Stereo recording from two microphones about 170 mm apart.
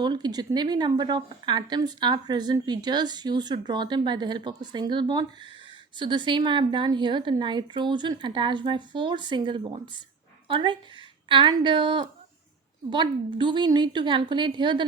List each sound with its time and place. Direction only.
0.0 s a woman's voice: 25° right (ahead or behind)